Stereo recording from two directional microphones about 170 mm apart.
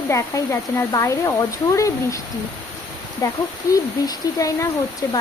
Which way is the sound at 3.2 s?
20° left (ahead or behind).